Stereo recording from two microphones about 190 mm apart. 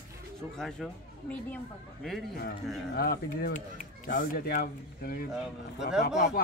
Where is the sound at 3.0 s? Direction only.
50° left (ahead or behind).